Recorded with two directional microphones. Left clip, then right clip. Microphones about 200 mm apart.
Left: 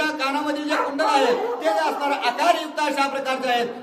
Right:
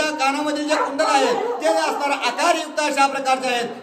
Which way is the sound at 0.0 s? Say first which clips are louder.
Right 3 dB; 15° right (ahead or behind).